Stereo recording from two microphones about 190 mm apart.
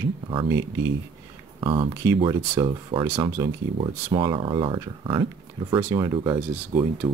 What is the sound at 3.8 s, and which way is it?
Speech, 25° right (ahead or behind).